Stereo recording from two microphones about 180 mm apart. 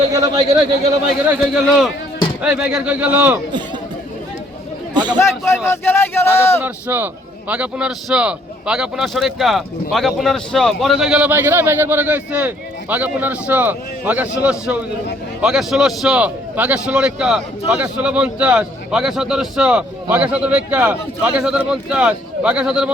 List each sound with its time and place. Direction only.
0.1 s a sound: 20° right (ahead or behind)
1.3 s a man's voice: 5° right (ahead or behind)
5.1 s speech: 15° left (ahead or behind)
6.6 s a man's voice: 10° right (ahead or behind)